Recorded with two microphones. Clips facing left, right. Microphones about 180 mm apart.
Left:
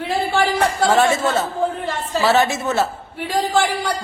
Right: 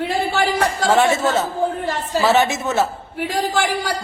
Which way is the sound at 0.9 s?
15° right (ahead or behind).